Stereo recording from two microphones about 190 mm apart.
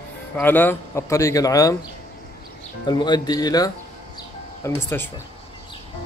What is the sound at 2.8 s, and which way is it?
A man's voice, 20° left (ahead or behind).